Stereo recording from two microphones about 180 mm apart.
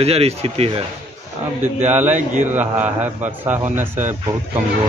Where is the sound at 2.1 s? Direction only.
40° right (ahead or behind).